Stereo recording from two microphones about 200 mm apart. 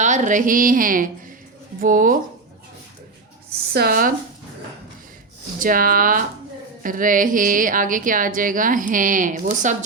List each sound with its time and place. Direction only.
0.0 s a woman's voice: 40° right (ahead or behind)
3.7 s a woman's voice: 50° right (ahead or behind)
5.5 s a woman's voice: 45° right (ahead or behind)